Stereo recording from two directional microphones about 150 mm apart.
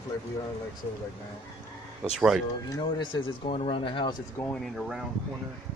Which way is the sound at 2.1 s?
5° right (ahead or behind).